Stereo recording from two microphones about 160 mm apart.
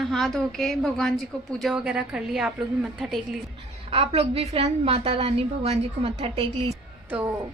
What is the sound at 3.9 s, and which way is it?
A woman's voice, 40° right (ahead or behind).